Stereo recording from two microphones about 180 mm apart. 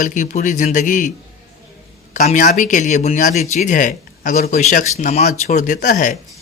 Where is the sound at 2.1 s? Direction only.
45° left (ahead or behind).